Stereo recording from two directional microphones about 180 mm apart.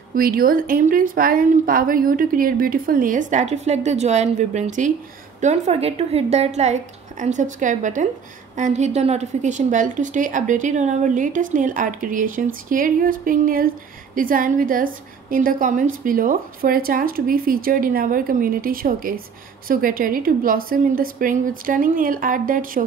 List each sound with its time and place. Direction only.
0.1 s a woman's voice: 55° right (ahead or behind)